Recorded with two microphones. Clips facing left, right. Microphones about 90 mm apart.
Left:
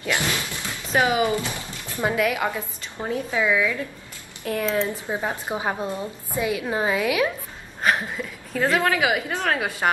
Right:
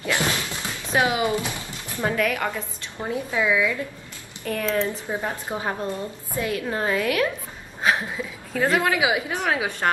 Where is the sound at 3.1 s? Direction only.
5° right (ahead or behind).